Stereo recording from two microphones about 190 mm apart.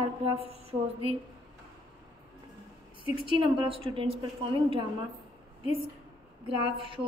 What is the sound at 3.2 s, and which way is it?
Speech, 25° right (ahead or behind).